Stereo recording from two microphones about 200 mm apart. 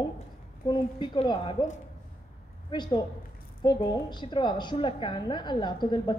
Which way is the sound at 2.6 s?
20° left (ahead or behind).